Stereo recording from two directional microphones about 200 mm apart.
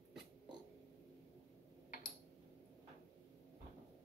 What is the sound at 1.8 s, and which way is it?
Tick-tock, 45° left (ahead or behind).